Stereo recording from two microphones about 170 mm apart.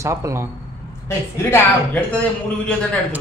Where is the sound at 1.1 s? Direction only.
10° left (ahead or behind).